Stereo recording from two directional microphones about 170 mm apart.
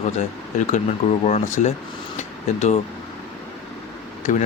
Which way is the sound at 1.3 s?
45° left (ahead or behind).